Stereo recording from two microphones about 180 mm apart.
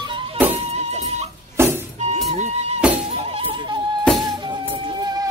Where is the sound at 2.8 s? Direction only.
5° right (ahead or behind).